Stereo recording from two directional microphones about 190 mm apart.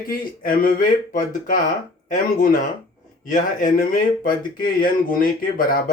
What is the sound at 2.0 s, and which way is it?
Speech, 45° left (ahead or behind).